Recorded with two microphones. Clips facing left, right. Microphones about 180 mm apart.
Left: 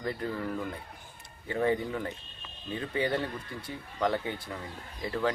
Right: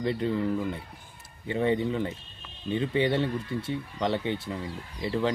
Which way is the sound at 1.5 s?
25° right (ahead or behind).